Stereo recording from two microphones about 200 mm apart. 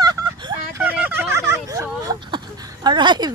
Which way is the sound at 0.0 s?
20° right (ahead or behind).